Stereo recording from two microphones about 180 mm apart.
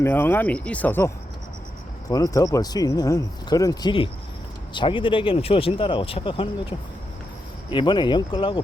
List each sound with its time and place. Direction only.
0.0 s speech: 10° left (ahead or behind); by 8.6 s 25° left (ahead or behind)